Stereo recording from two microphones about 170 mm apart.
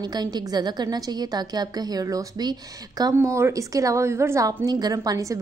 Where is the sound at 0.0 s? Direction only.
25° right (ahead or behind).